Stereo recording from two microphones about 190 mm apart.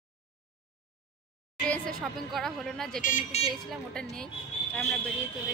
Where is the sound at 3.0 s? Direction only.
40° left (ahead or behind).